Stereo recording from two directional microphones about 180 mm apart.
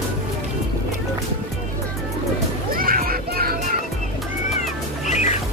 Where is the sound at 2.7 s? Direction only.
50° right (ahead or behind).